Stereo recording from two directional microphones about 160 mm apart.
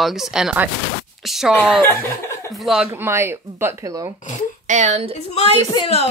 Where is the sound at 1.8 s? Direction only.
15° left (ahead or behind).